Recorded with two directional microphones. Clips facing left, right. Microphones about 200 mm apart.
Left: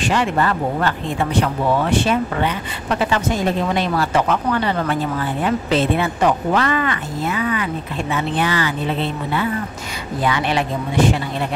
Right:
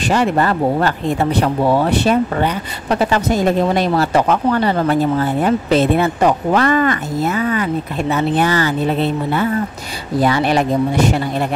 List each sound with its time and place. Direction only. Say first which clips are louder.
0.0 s speech: right 3 dB; 40° right (ahead or behind)